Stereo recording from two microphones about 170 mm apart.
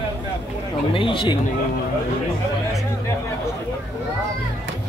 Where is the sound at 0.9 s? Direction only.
30° left (ahead or behind).